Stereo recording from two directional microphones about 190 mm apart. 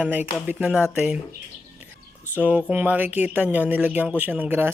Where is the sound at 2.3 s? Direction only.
10° right (ahead or behind).